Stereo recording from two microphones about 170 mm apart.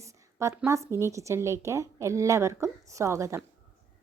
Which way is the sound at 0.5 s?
15° right (ahead or behind).